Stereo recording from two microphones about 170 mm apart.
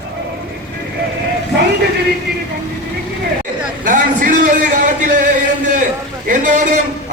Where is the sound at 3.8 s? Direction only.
50° right (ahead or behind).